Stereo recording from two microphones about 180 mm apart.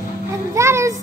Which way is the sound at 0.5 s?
15° right (ahead or behind).